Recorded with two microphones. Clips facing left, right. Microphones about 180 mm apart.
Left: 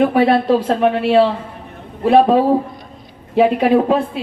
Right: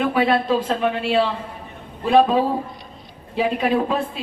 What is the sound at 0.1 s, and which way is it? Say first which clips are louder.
Speech: left 5 dB; 60° left (ahead or behind).